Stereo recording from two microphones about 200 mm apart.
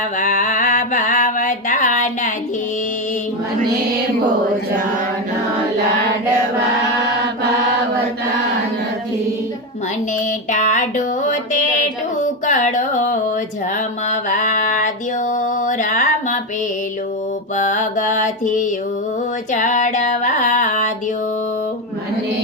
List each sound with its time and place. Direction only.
0.2 s mantra: 40° left (ahead or behind)
10.5 s music: 40° left (ahead or behind)
14.1 s a sound: 40° left (ahead or behind)
17.6 s mantra: 40° left (ahead or behind)
19.5 s female singing: 40° left (ahead or behind)